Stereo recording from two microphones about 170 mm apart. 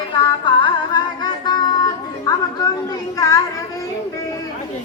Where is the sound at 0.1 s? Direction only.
30° left (ahead or behind).